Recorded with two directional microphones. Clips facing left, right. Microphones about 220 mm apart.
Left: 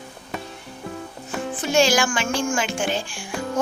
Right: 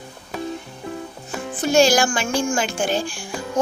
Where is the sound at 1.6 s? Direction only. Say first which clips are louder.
Right 3 dB; 40° right (ahead or behind).